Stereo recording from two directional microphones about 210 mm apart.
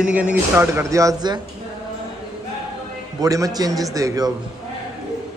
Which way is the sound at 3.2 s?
15° right (ahead or behind).